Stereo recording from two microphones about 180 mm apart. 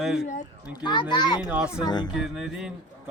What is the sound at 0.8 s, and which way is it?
A child's voice, 25° left (ahead or behind).